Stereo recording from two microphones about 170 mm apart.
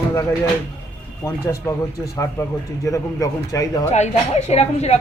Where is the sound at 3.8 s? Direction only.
45° left (ahead or behind).